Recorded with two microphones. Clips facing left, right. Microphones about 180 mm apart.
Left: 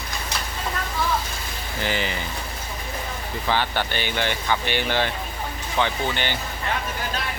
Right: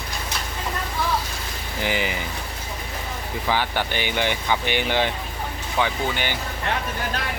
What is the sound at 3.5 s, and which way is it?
Speech, 10° right (ahead or behind).